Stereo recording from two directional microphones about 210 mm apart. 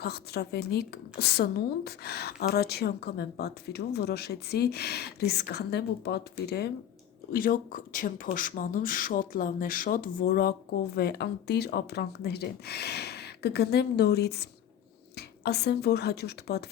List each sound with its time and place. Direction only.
0.0 s a woman's voice: 50° left (ahead or behind)